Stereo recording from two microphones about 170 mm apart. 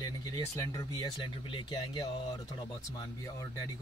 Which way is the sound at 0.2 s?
20° left (ahead or behind).